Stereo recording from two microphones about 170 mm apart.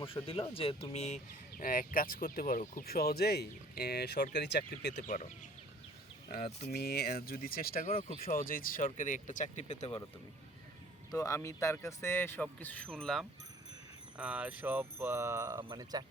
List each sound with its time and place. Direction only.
0.0 s speech: 30° left (ahead or behind); by 4.9 s 80° left
4.9 s speech: 50° left (ahead or behind)
6.7 s speech: 65° left (ahead or behind)
7.9 s speech: 35° left (ahead or behind)
8.2 s speech: 55° left (ahead or behind)
11.1 s speech: 20° left (ahead or behind); by 13.2 s 5° left (ahead or behind)
14.2 s a sound: 5° right (ahead or behind)
15.7 s speech: 25° right (ahead or behind)